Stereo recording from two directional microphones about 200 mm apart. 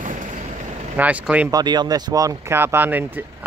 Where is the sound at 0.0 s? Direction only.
40° right (ahead or behind).